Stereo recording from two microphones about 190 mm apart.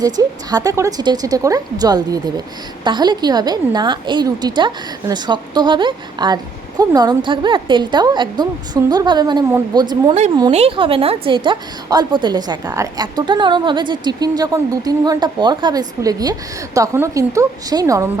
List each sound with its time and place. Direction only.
0.0 s a woman's voice: 20° right (ahead or behind)